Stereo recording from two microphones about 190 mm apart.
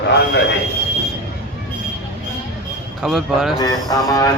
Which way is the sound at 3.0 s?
Centre (ahead or behind).